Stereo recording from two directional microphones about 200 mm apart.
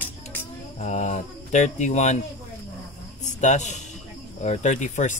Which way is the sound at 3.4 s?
35° left (ahead or behind).